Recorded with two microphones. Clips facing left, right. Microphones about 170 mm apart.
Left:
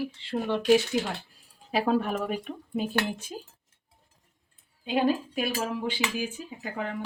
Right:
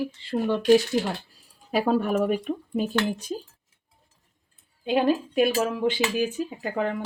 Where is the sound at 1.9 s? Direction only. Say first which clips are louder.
Right 5 dB; 45° right (ahead or behind).